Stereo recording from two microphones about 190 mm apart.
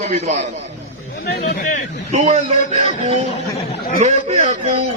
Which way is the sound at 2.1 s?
35° right (ahead or behind).